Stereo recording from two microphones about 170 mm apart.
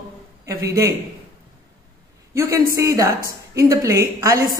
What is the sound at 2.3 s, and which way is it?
A man's voice, 15° right (ahead or behind).